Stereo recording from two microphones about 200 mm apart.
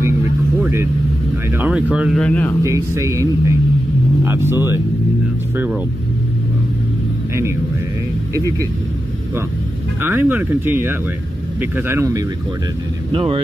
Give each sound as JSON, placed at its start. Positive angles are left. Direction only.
{"t": 0.6, "sound": "vehicle", "side_deg": -10}
{"t": 1.6, "sound": "speech", "side_deg": -5}
{"t": 2.6, "sound": "speech", "side_deg": -15}
{"t": 10.0, "sound": "speech", "side_deg": -10}
{"t": 13.1, "sound": "speech", "side_deg": -25}